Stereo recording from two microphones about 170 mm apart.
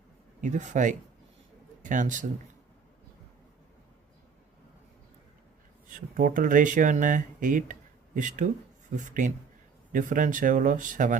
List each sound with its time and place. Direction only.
0.4 s a man's voice: 45° right (ahead or behind)
6.1 s speech: 55° right (ahead or behind)